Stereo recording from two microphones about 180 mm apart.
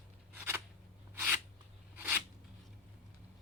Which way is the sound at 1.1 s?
10° right (ahead or behind).